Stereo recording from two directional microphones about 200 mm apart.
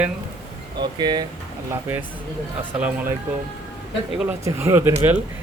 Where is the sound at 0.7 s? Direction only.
20° right (ahead or behind).